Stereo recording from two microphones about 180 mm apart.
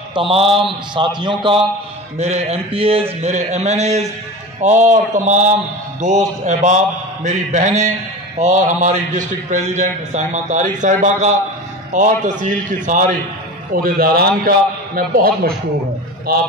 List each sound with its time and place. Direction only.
0.1 s a man's voice: 30° right (ahead or behind); by 13.1 s 45° right (ahead or behind)
13.7 s a man's voice: 55° right (ahead or behind)